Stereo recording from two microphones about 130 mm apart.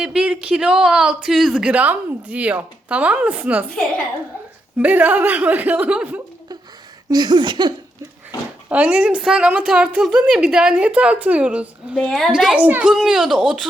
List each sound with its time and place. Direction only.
0.0 s speech: 5° right (ahead or behind)
4.8 s speech: 10° right (ahead or behind)
7.1 s a sound: 35° right (ahead or behind)
8.7 s speech: 10° right (ahead or behind)
11.9 s speech: 5° left (ahead or behind)